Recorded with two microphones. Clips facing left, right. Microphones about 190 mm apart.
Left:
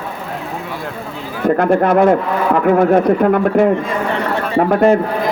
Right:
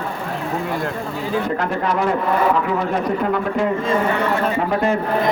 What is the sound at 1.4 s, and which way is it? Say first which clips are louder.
Speech: left 8 dB; 55° left (ahead or behind).